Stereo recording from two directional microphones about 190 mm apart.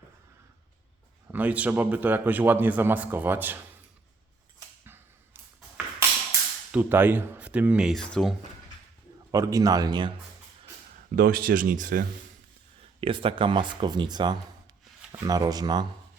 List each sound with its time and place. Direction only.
1.3 s a man's voice: 10° right (ahead or behind)
4.9 s a sound: 10° right (ahead or behind)
6.7 s a man's voice: 10° right (ahead or behind)
9.3 s speech: 20° right (ahead or behind)
11.1 s speech: 50° right (ahead or behind)
13.0 s speech: 30° right (ahead or behind)